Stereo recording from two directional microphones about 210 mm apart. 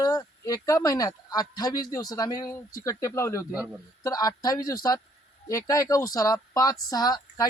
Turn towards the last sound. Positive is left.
turn(degrees=20)  # may be behind; listen again after turning